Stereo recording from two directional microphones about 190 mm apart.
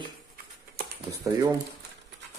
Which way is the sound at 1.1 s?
20° right (ahead or behind).